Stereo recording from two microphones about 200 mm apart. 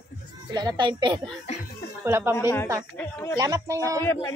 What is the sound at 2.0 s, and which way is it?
Speech, 10° right (ahead or behind).